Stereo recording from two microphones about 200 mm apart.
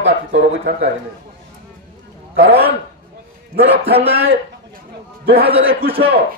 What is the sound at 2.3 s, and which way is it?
Speech, 55° right (ahead or behind).